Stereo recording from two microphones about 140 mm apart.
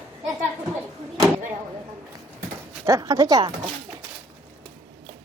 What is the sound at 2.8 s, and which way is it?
Speech, 25° right (ahead or behind).